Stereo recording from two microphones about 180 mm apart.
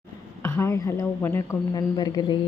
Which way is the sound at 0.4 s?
15° left (ahead or behind).